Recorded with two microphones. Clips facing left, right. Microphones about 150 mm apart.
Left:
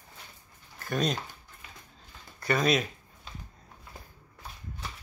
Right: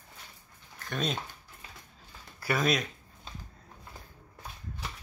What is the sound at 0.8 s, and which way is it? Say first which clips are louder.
Speech: left 4 dB; centre (ahead or behind).